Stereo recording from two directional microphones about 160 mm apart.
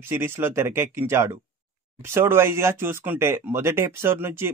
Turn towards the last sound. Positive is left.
turn(degrees=-15)  # may be behind; listen again after turning